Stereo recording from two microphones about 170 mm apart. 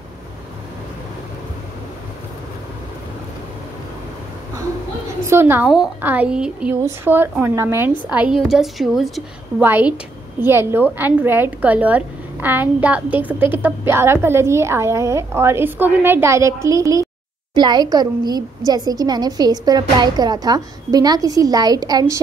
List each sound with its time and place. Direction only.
5.2 s a woman's voice: 15° right (ahead or behind)
9.6 s a woman's voice: 10° right (ahead or behind)